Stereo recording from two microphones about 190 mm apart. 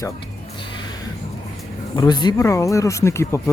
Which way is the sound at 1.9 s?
20° left (ahead or behind).